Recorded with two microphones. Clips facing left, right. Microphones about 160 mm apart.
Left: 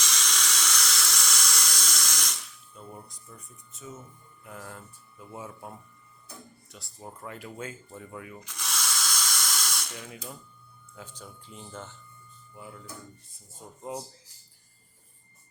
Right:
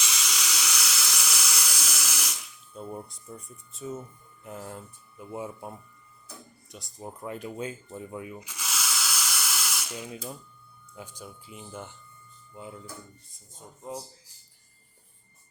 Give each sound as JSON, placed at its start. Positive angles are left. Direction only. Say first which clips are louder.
{"t": 0.0, "sound": "a sound", "louder": "left 1 dB", "side_deg": -10}
{"t": 2.8, "sound": "speech", "louder": "right 7 dB", "side_deg": -30}
{"t": 4.4, "sound": "speech", "louder": "right 4 dB", "side_deg": -20}
{"t": 8.4, "sound": "electric toothbrush", "louder": "even", "side_deg": -5}
{"t": 10.9, "sound": "speech", "louder": "right 2 dB", "side_deg": -10}
{"t": 13.5, "sound": "speech", "louder": "left 1 dB", "side_deg": 10}